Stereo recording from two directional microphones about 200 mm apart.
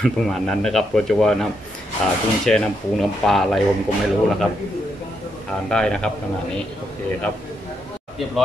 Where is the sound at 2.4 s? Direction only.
5° left (ahead or behind).